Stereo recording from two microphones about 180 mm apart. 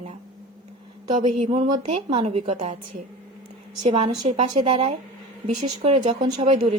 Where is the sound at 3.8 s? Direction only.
35° right (ahead or behind).